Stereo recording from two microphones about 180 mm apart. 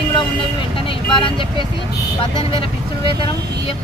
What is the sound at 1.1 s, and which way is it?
Speech, 25° left (ahead or behind).